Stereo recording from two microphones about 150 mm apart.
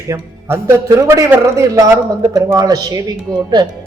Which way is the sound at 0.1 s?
15° right (ahead or behind).